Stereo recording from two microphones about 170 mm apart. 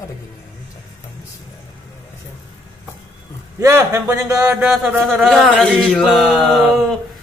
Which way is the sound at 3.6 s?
15° right (ahead or behind).